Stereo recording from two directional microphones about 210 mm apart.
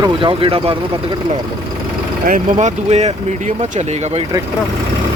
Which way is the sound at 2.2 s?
35° right (ahead or behind).